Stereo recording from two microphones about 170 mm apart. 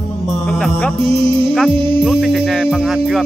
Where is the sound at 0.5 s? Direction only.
Centre (ahead or behind).